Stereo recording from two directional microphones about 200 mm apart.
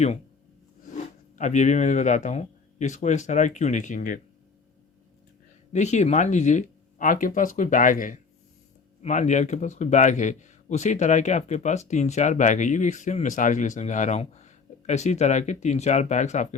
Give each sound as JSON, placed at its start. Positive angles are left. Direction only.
{"t": 0.9, "sound": "speech", "side_deg": 35}
{"t": 5.7, "sound": "speech", "side_deg": 35}